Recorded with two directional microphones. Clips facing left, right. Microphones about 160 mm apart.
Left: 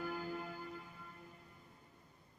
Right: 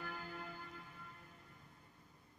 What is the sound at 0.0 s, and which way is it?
Church bell, 10° left (ahead or behind).